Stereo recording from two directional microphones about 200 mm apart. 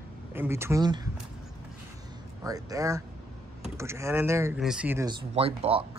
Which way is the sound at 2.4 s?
15° right (ahead or behind).